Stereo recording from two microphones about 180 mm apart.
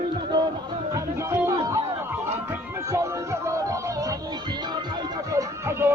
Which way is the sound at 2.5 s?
15° right (ahead or behind).